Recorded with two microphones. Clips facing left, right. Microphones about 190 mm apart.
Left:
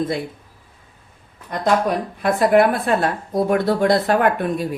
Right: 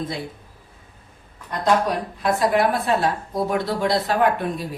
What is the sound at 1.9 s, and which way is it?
A woman's voice, 55° left (ahead or behind).